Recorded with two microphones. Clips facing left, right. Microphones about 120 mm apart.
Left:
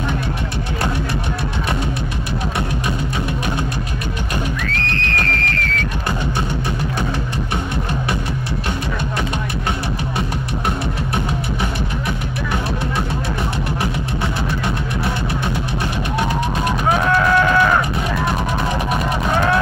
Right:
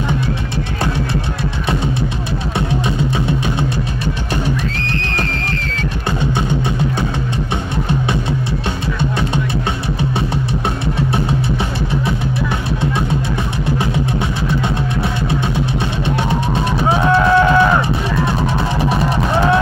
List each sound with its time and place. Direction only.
13.7 s music: 25° right (ahead or behind)
16.9 s music: 25° right (ahead or behind)